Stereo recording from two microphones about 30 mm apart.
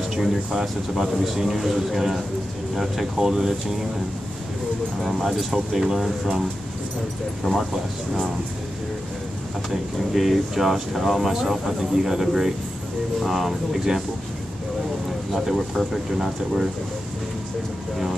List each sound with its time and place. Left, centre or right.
0.1 s speech: centre
5.0 s speech: centre
10.1 s speech: centre
11.6 s speech: centre
15.3 s speech: centre